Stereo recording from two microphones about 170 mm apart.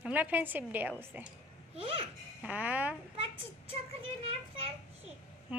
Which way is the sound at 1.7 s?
35° right (ahead or behind).